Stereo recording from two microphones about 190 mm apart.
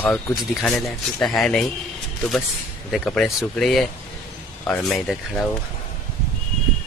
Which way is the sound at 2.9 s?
5° left (ahead or behind).